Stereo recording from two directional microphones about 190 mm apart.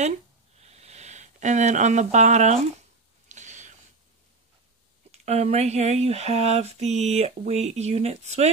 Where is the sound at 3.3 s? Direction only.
40° right (ahead or behind).